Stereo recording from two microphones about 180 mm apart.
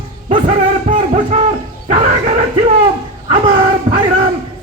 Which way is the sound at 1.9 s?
40° right (ahead or behind).